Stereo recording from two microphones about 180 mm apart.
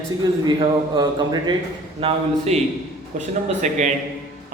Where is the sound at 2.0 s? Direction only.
35° right (ahead or behind).